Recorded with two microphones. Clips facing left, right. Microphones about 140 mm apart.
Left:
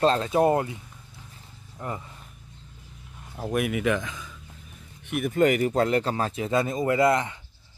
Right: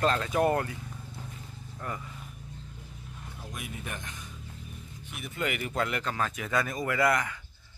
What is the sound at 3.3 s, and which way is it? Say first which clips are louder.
Speech: left 16 dB; 60° left (ahead or behind).